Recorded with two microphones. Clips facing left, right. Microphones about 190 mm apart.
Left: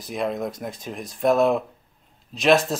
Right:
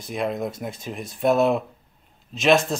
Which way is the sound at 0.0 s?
Centre (ahead or behind).